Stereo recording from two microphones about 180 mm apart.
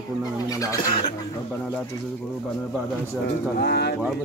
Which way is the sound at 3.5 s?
65° left (ahead or behind).